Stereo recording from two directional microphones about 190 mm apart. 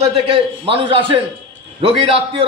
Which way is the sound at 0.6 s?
25° right (ahead or behind).